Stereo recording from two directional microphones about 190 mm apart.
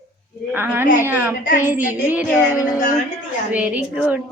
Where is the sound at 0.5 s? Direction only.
10° right (ahead or behind).